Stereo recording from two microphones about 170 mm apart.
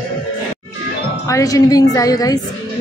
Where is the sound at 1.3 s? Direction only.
20° left (ahead or behind).